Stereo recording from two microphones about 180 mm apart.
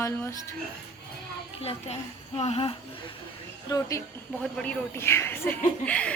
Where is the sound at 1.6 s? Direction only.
35° left (ahead or behind).